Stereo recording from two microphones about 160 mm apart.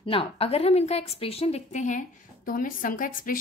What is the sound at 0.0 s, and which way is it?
A woman's voice, 35° left (ahead or behind).